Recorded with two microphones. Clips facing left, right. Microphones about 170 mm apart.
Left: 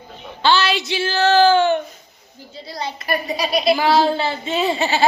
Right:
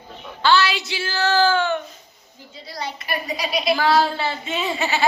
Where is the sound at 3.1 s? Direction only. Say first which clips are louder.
Left 5 dB; 40° left (ahead or behind).